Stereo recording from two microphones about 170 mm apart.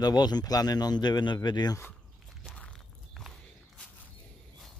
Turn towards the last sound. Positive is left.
turn(degrees=5)  # may be behind; listen again after turning